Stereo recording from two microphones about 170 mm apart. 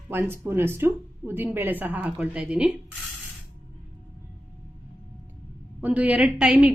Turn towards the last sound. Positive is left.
turn(degrees=-5)  # may be behind; listen again after turning